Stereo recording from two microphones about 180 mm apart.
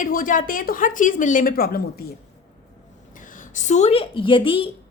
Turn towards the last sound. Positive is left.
turn(degrees=30)  # may be behind; listen again after turning